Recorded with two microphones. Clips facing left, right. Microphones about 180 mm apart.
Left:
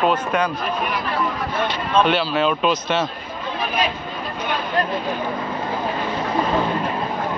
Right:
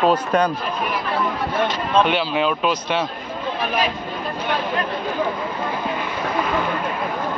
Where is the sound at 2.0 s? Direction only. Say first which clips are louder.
Left 1 dB; 15° right (ahead or behind).